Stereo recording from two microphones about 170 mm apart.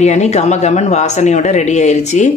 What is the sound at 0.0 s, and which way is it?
A woman's voice, 40° left (ahead or behind).